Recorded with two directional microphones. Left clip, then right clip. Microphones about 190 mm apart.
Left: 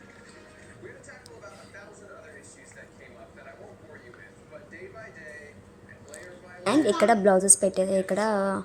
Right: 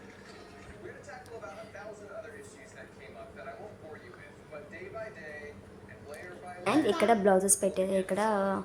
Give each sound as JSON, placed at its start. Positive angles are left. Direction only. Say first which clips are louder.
{"t": 6.7, "sound": "a woman's voice", "louder": "left 4 dB", "side_deg": 25}